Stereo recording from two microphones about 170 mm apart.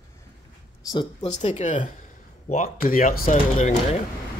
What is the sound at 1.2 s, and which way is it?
Speech, 40° left (ahead or behind).